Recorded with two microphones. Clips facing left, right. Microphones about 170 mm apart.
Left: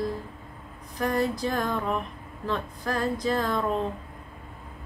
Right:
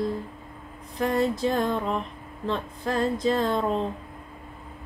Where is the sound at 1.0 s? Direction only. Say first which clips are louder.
Right 2 dB; 25° right (ahead or behind).